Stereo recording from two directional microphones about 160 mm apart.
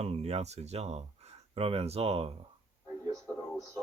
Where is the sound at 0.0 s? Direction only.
40° right (ahead or behind).